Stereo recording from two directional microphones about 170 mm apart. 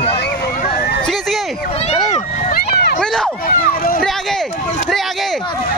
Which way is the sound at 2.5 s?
70° left (ahead or behind).